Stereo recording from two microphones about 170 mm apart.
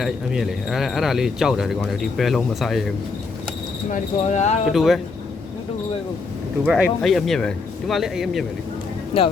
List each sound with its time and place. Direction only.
0.0 s speech: centre (ahead or behind)
3.9 s speech: 45° left (ahead or behind)
4.7 s speech: centre (ahead or behind)
6.7 s speech: centre (ahead or behind)
9.1 s speech: 30° left (ahead or behind)